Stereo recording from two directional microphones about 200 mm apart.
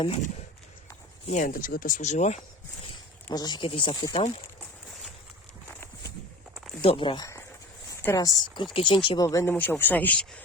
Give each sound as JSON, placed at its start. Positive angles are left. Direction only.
{"t": 1.3, "sound": "speech", "side_deg": 40}
{"t": 3.2, "sound": "speech", "side_deg": 20}
{"t": 6.8, "sound": "speech", "side_deg": 25}